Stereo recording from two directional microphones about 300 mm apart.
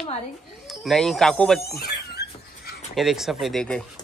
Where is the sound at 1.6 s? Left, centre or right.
Left.